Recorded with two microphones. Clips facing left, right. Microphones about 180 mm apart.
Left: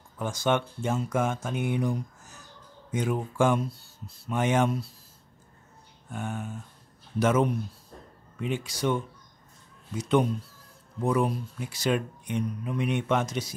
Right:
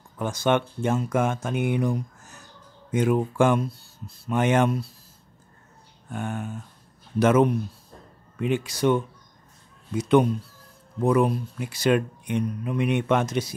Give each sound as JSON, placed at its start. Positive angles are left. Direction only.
{"t": 0.2, "sound": "speech", "side_deg": -60}
{"t": 6.1, "sound": "speech", "side_deg": -60}